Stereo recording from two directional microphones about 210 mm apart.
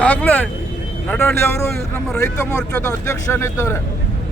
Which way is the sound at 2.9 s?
15° left (ahead or behind).